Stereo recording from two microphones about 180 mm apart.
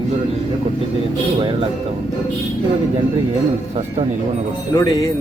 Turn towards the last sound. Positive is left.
turn(degrees=20)  # may be behind; listen again after turning